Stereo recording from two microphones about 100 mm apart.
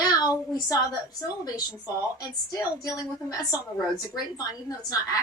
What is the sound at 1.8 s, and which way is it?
A woman's voice, 35° left (ahead or behind).